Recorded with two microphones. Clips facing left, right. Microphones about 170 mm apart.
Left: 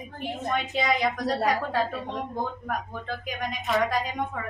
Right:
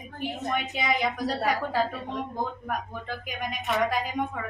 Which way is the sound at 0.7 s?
5° right (ahead or behind).